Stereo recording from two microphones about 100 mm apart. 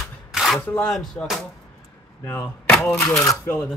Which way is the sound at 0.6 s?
20° left (ahead or behind).